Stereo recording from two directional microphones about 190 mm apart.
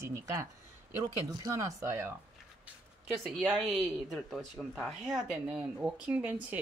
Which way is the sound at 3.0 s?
Centre (ahead or behind).